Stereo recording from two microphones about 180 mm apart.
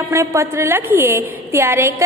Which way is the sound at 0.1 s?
15° right (ahead or behind).